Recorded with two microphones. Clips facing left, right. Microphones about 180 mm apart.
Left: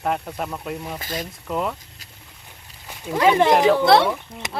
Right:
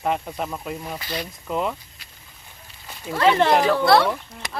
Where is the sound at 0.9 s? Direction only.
45° left (ahead or behind).